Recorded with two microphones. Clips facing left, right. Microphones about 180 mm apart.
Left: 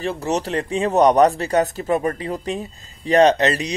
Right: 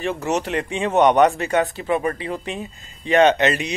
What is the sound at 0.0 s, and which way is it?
Speech, 35° left (ahead or behind).